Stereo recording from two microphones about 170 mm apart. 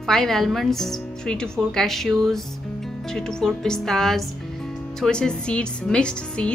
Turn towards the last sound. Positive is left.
turn(degrees=5)  # may be behind; listen again after turning